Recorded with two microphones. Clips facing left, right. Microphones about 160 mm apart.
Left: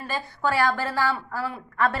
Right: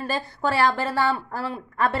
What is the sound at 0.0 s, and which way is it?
A woman's voice, 30° right (ahead or behind).